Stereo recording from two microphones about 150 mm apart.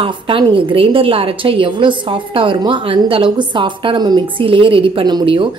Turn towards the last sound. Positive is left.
turn(degrees=-30)  # may be behind; listen again after turning